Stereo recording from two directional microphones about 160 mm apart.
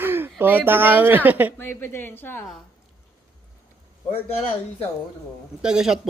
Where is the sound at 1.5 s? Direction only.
15° left (ahead or behind).